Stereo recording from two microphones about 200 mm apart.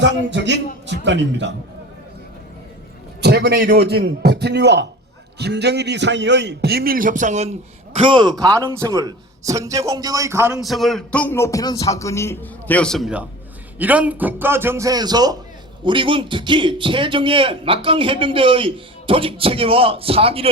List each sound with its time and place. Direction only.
0.0 s a man's voice: 65° right (ahead or behind)
3.2 s a man's voice: 55° right (ahead or behind); by 7.5 s 35° right (ahead or behind)
7.9 s a man's voice: 25° right (ahead or behind)
10.6 s a man's voice: centre (ahead or behind); by 20.5 s 30° right (ahead or behind)